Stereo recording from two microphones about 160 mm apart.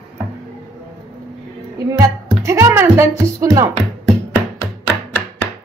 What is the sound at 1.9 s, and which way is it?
Speech, 20° right (ahead or behind).